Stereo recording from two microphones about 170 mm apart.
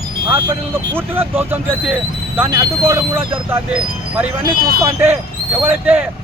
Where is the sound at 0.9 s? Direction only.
15° right (ahead or behind).